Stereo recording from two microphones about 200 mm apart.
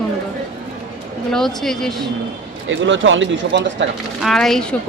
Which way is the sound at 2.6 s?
70° right (ahead or behind).